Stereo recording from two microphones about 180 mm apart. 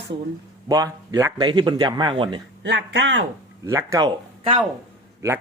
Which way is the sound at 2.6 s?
90° right.